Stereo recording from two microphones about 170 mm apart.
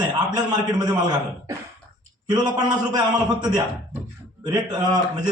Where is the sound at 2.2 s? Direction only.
25° right (ahead or behind).